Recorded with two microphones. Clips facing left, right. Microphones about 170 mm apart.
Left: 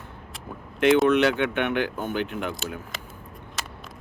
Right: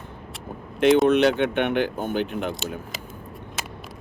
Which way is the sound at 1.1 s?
20° right (ahead or behind).